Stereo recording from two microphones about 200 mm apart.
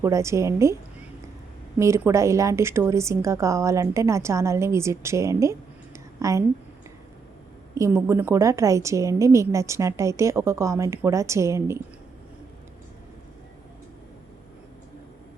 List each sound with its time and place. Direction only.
0.0 s a woman's voice: 15° right (ahead or behind)
1.8 s a woman's voice: 15° right (ahead or behind)
7.8 s a woman's voice: 10° right (ahead or behind)